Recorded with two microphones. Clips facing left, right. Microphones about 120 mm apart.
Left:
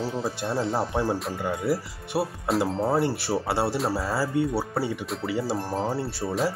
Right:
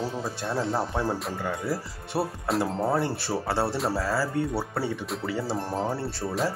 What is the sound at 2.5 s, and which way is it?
Speech, centre (ahead or behind).